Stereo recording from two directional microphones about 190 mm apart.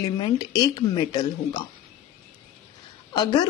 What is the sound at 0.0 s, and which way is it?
Speech, 20° left (ahead or behind).